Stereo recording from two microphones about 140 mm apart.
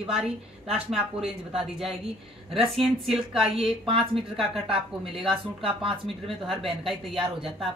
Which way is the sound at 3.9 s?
40° right (ahead or behind).